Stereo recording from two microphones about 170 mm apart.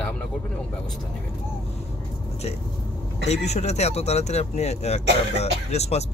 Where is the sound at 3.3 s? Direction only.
40° left (ahead or behind).